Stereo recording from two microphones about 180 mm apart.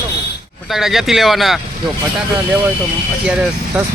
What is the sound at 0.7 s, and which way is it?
Speech, centre (ahead or behind).